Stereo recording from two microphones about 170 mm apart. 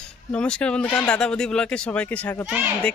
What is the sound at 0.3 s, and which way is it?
Speech, 5° left (ahead or behind).